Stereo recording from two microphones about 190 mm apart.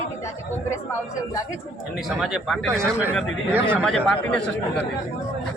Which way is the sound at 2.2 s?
Centre (ahead or behind).